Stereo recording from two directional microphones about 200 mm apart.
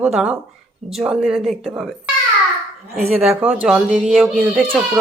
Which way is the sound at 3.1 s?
5° right (ahead or behind).